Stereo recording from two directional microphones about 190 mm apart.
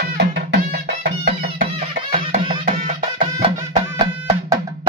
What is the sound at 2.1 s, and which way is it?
Music, 25° right (ahead or behind).